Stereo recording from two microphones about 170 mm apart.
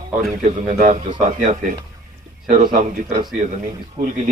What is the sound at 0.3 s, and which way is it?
Speech, 45° right (ahead or behind).